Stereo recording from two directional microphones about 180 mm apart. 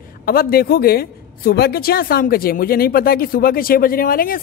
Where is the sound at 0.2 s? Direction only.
55° left (ahead or behind).